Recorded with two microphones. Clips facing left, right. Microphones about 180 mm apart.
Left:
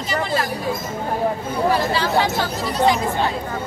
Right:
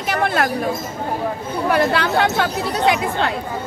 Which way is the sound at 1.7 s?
60° right (ahead or behind).